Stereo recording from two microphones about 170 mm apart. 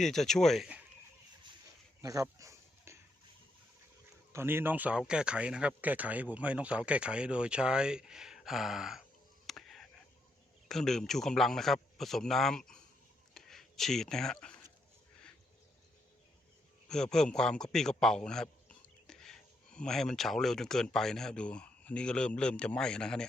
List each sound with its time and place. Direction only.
0.0 s speech: centre (ahead or behind)
2.0 s dog: 20° right (ahead or behind)
4.3 s speech: 15° right (ahead or behind)
9.5 s a sound: centre (ahead or behind)
10.7 s speech: centre (ahead or behind)
13.3 s a sound: centre (ahead or behind)
16.9 s a man's voice: 5° left (ahead or behind)